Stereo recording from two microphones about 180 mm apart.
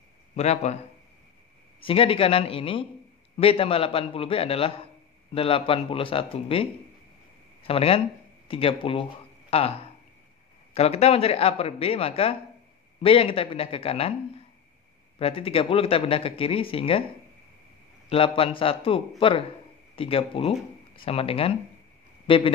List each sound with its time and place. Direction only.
0.4 s speech: 40° left (ahead or behind)
1.8 s speech: 30° left (ahead or behind)
18.1 s speech: 30° left (ahead or behind)